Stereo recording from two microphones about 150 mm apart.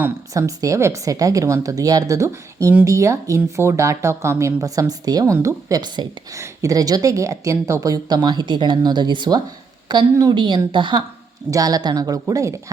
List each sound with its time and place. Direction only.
0.0 s a woman's voice: 20° right (ahead or behind)